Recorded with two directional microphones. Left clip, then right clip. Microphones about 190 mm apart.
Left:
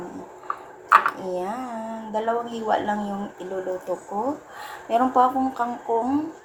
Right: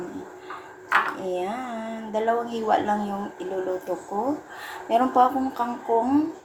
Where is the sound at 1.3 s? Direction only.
Centre (ahead or behind).